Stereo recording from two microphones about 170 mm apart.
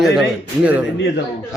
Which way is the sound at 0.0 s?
5° right (ahead or behind).